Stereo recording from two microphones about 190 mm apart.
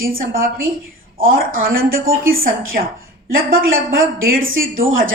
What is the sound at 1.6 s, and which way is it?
A woman's voice, 50° right (ahead or behind).